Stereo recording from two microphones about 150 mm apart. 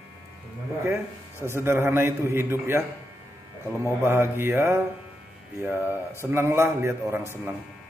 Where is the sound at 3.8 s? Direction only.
15° right (ahead or behind).